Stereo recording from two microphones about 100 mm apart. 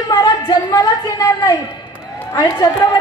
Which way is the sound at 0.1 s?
45° left (ahead or behind).